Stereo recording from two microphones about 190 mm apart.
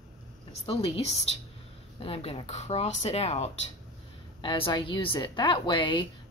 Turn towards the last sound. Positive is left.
turn(degrees=25)  # may be behind; listen again after turning